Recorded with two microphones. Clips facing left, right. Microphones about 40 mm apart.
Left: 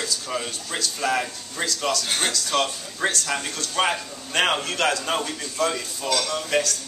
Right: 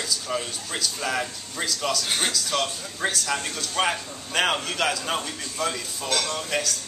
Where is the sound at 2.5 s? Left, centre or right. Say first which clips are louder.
Left 3 dB; centre.